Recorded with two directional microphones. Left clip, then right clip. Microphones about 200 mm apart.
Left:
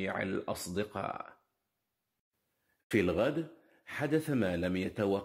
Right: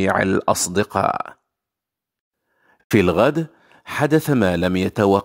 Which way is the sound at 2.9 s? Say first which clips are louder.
Right 14 dB; 45° right (ahead or behind).